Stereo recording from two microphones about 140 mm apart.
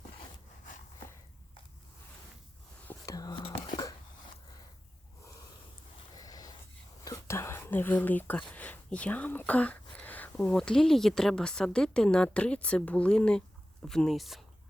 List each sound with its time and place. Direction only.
2.8 s whispering: 25° left (ahead or behind)
3.3 s whispering: 40° left (ahead or behind)
6.1 s a sound: 25° left (ahead or behind)
7.0 s speech: 20° left (ahead or behind); by 14.4 s centre (ahead or behind)